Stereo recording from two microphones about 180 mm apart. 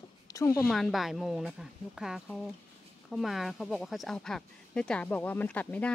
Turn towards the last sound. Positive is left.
turn(degrees=10)  # may be behind; listen again after turning